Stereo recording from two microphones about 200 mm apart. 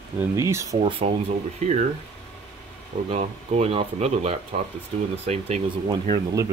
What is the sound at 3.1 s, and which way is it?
Speech, 35° right (ahead or behind).